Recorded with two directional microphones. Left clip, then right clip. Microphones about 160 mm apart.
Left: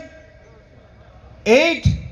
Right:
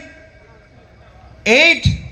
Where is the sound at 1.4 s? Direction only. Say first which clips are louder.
Right 3 dB; 15° right (ahead or behind).